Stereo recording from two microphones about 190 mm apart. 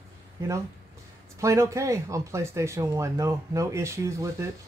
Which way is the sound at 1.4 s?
15° right (ahead or behind).